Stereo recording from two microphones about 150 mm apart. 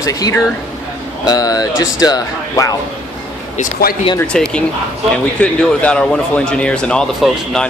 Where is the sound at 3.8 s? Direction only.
90° left.